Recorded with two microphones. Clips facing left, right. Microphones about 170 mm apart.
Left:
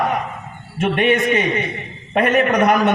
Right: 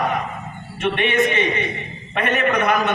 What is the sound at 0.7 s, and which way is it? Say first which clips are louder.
A man's voice: left 3 dB; 45° left (ahead or behind).